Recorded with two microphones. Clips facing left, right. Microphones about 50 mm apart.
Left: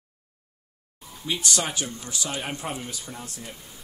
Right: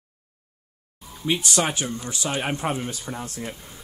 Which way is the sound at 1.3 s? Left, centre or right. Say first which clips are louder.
Right 4 dB; right.